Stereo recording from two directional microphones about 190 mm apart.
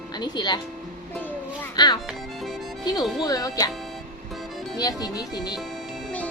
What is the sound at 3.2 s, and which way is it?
Speech, 20° left (ahead or behind).